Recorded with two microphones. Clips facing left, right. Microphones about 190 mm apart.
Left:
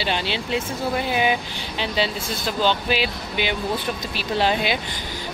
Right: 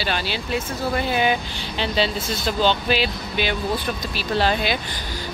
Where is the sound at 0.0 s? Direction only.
20° left (ahead or behind).